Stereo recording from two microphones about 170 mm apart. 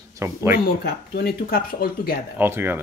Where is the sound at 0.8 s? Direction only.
70° left (ahead or behind).